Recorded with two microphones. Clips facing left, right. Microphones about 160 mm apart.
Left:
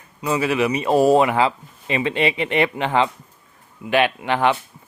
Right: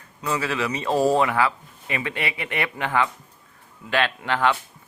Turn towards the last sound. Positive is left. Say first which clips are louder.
# left 3 dB
turn(degrees=20)  # may be behind; listen again after turning